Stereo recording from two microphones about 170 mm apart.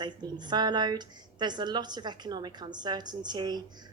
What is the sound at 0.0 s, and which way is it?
Speech, 25° right (ahead or behind).